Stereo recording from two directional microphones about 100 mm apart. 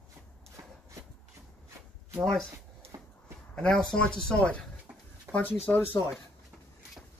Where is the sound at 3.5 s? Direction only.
5° left (ahead or behind).